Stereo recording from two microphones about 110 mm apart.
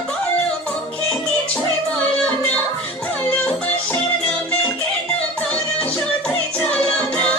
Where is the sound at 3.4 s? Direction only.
10° left (ahead or behind).